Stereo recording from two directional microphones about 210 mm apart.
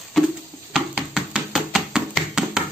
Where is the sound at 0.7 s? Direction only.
5° right (ahead or behind).